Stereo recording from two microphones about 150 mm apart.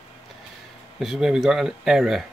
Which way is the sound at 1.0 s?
5° right (ahead or behind).